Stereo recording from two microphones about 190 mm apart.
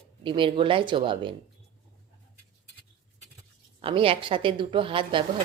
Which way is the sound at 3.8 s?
30° right (ahead or behind).